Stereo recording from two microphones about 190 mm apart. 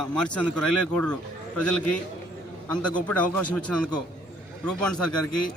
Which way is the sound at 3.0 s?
5° left (ahead or behind).